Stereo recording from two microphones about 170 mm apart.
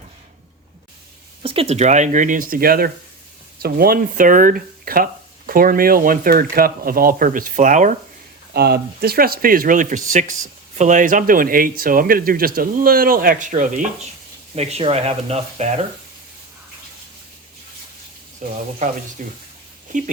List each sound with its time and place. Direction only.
1.4 s speech: 35° right (ahead or behind); by 7.9 s 50° right (ahead or behind)
8.5 s speech: 70° right (ahead or behind); by 13.8 s 50° right (ahead or behind)
14.5 s speech: 40° right (ahead or behind)
18.4 s speech: 50° right (ahead or behind)